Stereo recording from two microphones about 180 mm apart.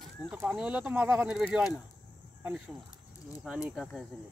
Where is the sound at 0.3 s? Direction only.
Centre (ahead or behind).